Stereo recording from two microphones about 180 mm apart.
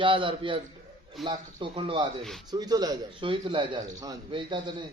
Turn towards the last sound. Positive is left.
turn(degrees=-25)  # may be behind; listen again after turning